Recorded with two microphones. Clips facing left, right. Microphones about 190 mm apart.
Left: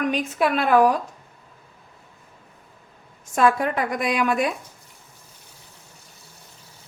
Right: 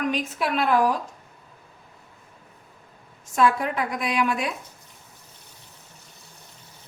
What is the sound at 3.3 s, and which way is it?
A woman's voice, 50° left (ahead or behind).